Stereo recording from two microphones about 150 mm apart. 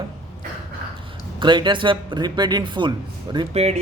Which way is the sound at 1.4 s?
30° right (ahead or behind).